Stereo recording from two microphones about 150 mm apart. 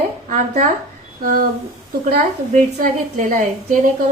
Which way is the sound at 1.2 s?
75° right (ahead or behind).